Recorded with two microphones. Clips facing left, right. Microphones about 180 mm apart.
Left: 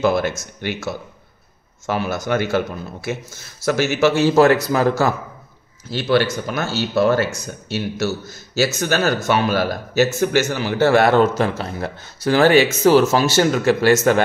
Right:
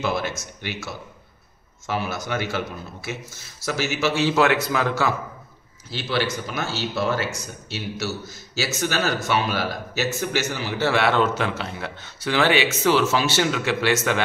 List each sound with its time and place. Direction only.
0.0 s a man's voice: 50° left (ahead or behind)
1.9 s a man's voice: 50° left (ahead or behind)
8.5 s a man's voice: 45° left (ahead or behind)